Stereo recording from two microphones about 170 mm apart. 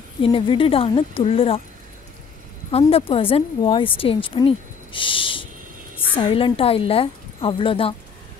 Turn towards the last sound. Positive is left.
turn(degrees=30)  # may be behind; listen again after turning